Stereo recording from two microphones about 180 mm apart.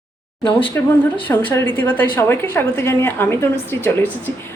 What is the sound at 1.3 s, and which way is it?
Speech, 10° left (ahead or behind).